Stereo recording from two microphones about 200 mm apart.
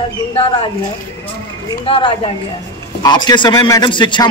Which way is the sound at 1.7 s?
25° left (ahead or behind).